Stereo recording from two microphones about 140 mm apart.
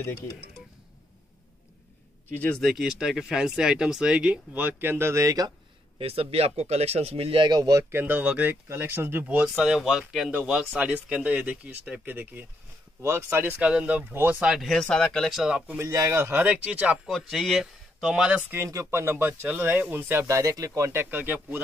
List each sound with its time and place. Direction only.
2.3 s speech: 10° left (ahead or behind); by 5.5 s 25° right (ahead or behind)
5.9 s speech: 45° right (ahead or behind)
7.9 s speech: 15° right (ahead or behind)
15.8 s speech: 20° right (ahead or behind); by 18.4 s 5° right (ahead or behind)
18.5 s speech: 20° right (ahead or behind)